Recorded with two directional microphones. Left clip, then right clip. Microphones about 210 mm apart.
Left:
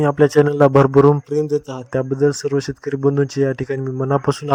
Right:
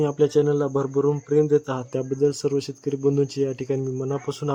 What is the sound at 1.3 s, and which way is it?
Speech, centre (ahead or behind).